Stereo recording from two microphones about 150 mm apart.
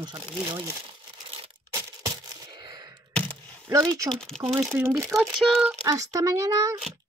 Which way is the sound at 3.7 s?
20° right (ahead or behind).